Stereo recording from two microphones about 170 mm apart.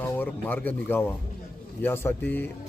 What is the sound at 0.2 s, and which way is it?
A man's voice, 10° left (ahead or behind).